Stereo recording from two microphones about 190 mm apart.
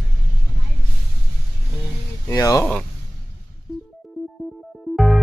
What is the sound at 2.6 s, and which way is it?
Speech, 5° left (ahead or behind).